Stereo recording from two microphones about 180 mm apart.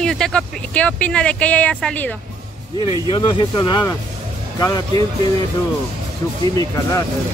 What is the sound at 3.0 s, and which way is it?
Speech, 25° left (ahead or behind).